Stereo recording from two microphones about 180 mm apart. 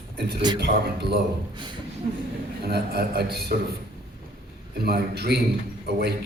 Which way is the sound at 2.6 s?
60° right (ahead or behind).